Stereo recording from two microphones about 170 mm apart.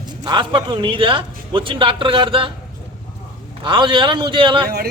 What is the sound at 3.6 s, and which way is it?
A man's voice, 30° right (ahead or behind).